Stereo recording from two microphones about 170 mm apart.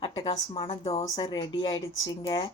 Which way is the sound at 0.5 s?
35° left (ahead or behind).